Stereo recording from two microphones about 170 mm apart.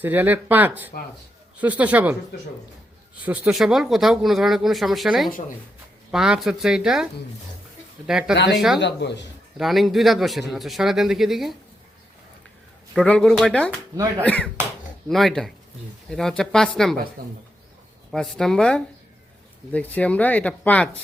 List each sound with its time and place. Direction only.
0.0 s speech: 10° right (ahead or behind)
3.2 s speech: 10° right (ahead or behind)
8.8 s speech: 90° left
9.6 s speech: centre (ahead or behind)
12.9 s speech: 5° left (ahead or behind)
17.2 s speech: 60° right (ahead or behind)
18.1 s speech: centre (ahead or behind)